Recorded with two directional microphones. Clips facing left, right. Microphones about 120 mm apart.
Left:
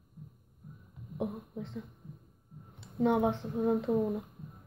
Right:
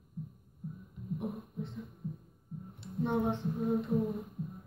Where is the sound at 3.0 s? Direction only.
90° left.